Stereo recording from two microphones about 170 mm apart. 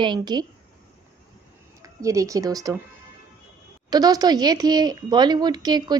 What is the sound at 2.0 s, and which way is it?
Speech, 20° right (ahead or behind).